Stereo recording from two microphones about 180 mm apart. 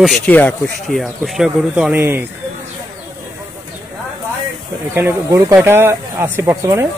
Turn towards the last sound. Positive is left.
turn(degrees=-15)  # may be behind; listen again after turning